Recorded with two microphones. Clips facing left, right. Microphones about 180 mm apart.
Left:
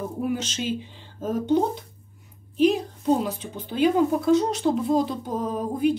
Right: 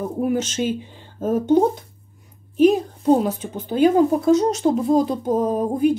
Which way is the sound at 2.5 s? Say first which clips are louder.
Right 5 dB; 45° right (ahead or behind).